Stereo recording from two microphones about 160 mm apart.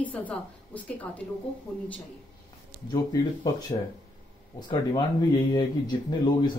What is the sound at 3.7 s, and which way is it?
Speech, 30° left (ahead or behind).